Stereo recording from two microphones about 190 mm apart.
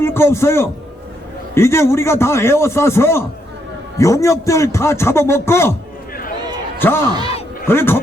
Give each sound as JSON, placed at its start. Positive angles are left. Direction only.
{"t": 0.0, "sound": "a man's voice", "side_deg": 15}
{"t": 7.1, "sound": "speech", "side_deg": -20}
{"t": 7.7, "sound": "a man's voice", "side_deg": 10}